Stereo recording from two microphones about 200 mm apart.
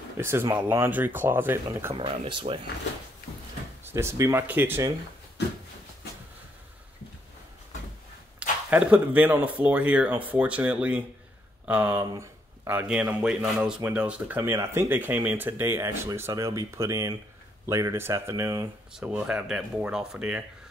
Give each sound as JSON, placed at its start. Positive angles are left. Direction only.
{"t": 0.2, "sound": "speech", "side_deg": -10}
{"t": 2.0, "sound": "speech", "side_deg": -30}
{"t": 3.9, "sound": "speech", "side_deg": -15}
{"t": 8.4, "sound": "a man's voice", "side_deg": -5}
{"t": 18.9, "sound": "speech", "side_deg": -5}